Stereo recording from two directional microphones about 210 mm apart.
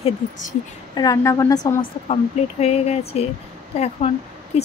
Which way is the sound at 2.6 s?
30° left (ahead or behind).